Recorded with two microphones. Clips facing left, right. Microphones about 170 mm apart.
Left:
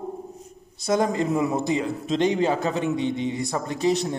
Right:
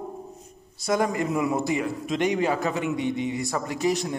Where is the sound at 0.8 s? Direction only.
25° left (ahead or behind).